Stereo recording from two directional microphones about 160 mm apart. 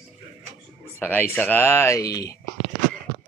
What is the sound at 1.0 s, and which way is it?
Speech, 10° left (ahead or behind).